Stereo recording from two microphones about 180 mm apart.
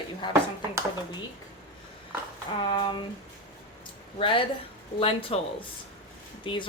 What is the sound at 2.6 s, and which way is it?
Speech, 25° left (ahead or behind).